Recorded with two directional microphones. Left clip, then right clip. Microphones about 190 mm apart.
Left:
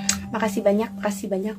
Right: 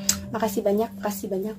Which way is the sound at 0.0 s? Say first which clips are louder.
Left 1 dB; centre (ahead or behind).